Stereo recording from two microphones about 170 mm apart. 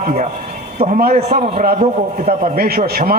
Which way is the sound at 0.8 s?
35° right (ahead or behind).